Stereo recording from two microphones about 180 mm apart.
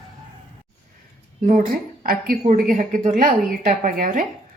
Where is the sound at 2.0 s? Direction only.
55° right (ahead or behind).